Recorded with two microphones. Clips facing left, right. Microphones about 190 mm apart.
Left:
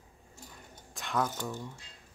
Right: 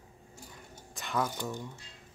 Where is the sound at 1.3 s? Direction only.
15° right (ahead or behind).